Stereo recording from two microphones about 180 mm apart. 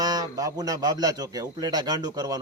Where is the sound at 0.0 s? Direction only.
20° right (ahead or behind).